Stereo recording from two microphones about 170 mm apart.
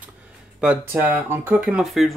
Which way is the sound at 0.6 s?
10° right (ahead or behind).